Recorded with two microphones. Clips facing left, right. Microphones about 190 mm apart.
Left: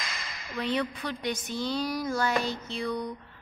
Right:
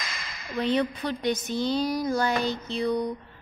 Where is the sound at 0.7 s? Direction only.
25° right (ahead or behind).